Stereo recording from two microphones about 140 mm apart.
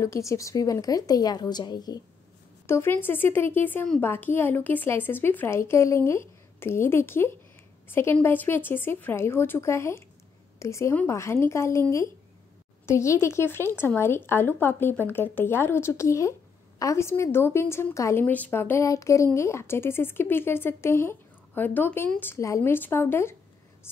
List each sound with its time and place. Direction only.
0.0 s a woman's voice: 20° left (ahead or behind)
2.6 s a woman's voice: 20° left (ahead or behind)
12.8 s speech: 20° left (ahead or behind)